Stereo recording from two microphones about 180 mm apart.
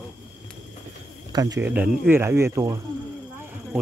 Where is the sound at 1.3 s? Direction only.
20° right (ahead or behind).